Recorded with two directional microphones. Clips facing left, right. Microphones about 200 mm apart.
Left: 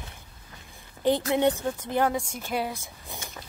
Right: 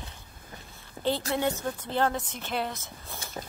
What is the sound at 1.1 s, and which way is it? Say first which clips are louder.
A woman's voice: left 5 dB; 20° left (ahead or behind).